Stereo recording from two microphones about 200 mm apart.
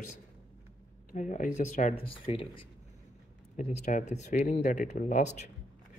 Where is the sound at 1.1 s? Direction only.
40° left (ahead or behind).